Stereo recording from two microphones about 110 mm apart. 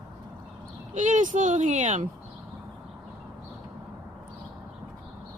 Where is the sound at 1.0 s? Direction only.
90° right.